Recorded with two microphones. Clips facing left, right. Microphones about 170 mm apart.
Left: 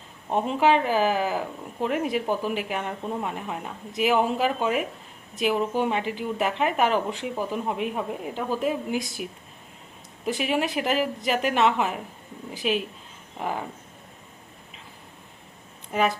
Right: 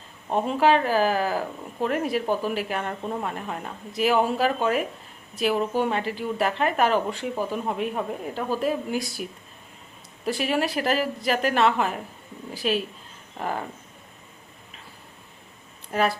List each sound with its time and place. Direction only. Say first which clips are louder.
0.3 s speech: right 1 dB; centre (ahead or behind)
0.6 s speech: right 1 dB; 15° left (ahead or behind)
10.2 s speech: right 1 dB; 15° left (ahead or behind)
15.9 s speech: even; 15° left (ahead or behind)